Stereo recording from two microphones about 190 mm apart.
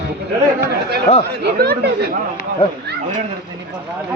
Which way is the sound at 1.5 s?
55° right (ahead or behind).